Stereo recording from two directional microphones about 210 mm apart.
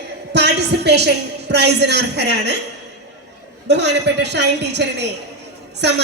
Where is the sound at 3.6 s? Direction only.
55° right (ahead or behind).